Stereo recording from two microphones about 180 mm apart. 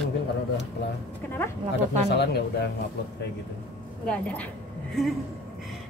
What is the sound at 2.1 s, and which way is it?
Speech, 65° left (ahead or behind).